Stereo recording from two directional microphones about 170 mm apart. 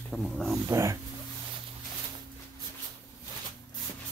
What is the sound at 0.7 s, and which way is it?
Dog, 15° right (ahead or behind).